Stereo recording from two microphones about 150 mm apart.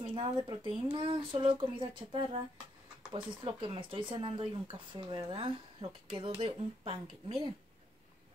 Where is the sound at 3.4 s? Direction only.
35° right (ahead or behind).